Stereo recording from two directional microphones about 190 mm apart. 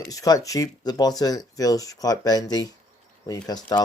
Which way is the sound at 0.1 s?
20° left (ahead or behind).